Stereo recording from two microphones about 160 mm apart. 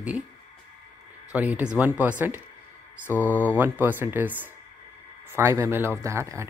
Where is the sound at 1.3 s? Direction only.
10° right (ahead or behind).